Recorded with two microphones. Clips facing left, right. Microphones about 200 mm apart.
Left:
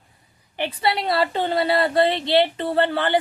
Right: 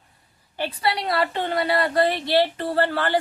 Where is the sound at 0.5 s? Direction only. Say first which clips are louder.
Left 2 dB; 20° left (ahead or behind).